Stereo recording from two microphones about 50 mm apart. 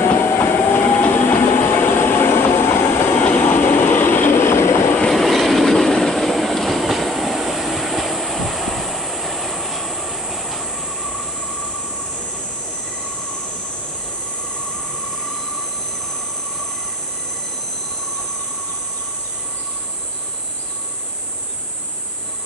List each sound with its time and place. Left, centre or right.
0.1 s train: left
3.2 s train: left
5.1 s train: centre